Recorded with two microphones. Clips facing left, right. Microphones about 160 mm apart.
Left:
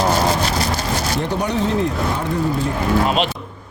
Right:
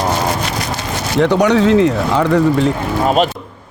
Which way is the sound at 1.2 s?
80° right.